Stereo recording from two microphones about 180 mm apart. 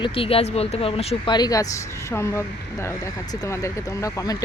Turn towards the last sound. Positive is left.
turn(degrees=20)  # may be behind; listen again after turning